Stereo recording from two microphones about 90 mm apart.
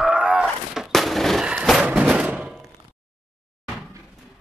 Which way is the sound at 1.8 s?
15° right (ahead or behind).